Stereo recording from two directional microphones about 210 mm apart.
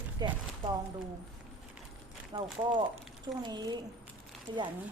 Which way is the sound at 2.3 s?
20° right (ahead or behind).